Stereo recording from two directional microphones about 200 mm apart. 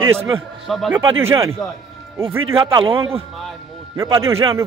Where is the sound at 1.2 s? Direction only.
15° right (ahead or behind).